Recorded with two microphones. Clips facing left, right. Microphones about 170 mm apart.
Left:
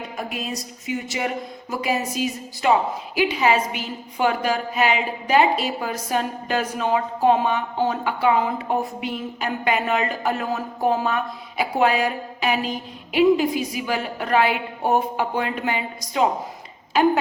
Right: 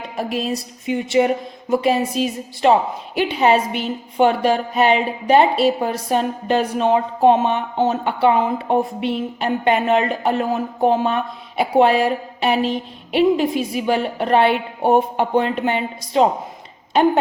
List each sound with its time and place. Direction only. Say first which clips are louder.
0.2 s a woman's voice: right 8 dB; 30° right (ahead or behind)